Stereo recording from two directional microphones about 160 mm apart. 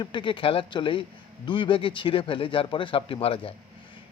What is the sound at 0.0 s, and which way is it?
Speech, 30° left (ahead or behind).